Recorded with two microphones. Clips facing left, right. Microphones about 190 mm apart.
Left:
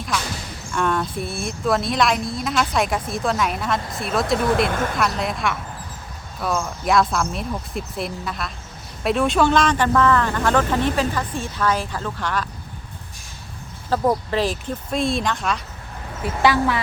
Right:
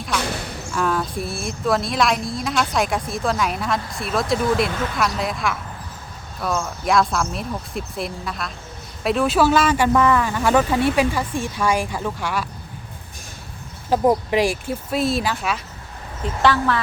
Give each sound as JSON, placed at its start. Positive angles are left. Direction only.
{"t": 0.7, "sound": "speech", "side_deg": 0}
{"t": 13.9, "sound": "speech", "side_deg": -15}
{"t": 16.2, "sound": "speech", "side_deg": 10}